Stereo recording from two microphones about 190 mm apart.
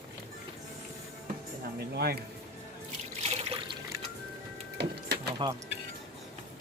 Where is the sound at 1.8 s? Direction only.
55° right (ahead or behind).